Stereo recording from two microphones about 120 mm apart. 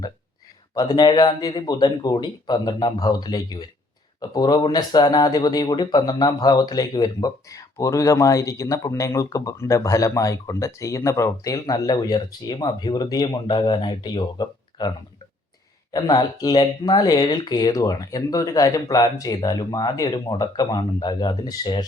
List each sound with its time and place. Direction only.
0.7 s speech: 35° left (ahead or behind)